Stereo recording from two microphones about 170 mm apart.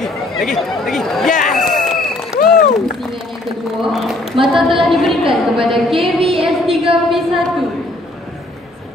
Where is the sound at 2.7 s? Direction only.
Centre (ahead or behind).